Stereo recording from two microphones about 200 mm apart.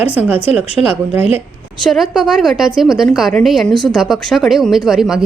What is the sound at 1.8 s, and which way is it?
A woman's voice, centre (ahead or behind).